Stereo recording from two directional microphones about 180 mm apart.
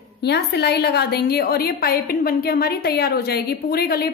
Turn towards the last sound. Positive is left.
turn(degrees=60)  # may be behind; listen again after turning